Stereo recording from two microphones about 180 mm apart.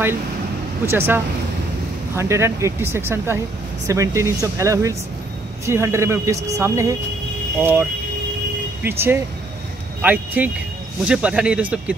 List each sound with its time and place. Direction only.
0.8 s speech: 10° right (ahead or behind)
8.8 s speech: 10° right (ahead or behind)